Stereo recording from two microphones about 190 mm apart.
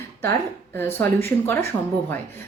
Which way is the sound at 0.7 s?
10° left (ahead or behind).